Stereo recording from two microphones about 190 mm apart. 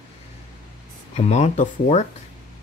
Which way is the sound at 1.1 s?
35° left (ahead or behind).